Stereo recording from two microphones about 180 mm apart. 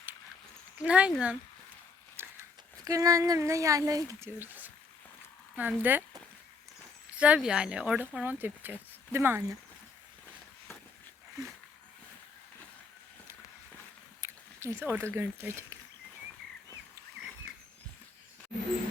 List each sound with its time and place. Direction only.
0.8 s speech: 5° right (ahead or behind)
7.2 s speech: 5° right (ahead or behind)
14.2 s speech: 15° right (ahead or behind)